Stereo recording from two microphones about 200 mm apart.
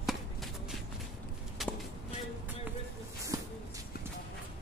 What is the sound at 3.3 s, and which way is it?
Shuffle, 15° right (ahead or behind).